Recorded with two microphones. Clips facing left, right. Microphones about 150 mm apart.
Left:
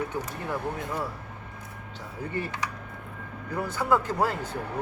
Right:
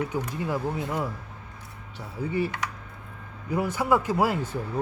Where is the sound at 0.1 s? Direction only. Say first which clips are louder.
Right 3 dB; 10° right (ahead or behind).